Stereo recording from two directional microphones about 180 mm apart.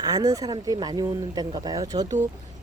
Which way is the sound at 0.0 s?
20° right (ahead or behind).